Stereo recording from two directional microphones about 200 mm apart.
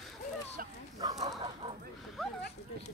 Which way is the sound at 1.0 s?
20° right (ahead or behind).